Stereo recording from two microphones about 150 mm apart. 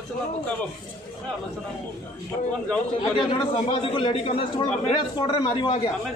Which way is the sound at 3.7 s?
40° left (ahead or behind).